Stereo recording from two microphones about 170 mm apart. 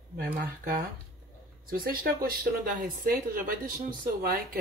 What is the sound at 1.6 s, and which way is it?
Speech, 60° right (ahead or behind).